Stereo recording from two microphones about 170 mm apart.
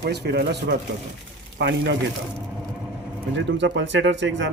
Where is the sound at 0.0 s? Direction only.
75° right (ahead or behind).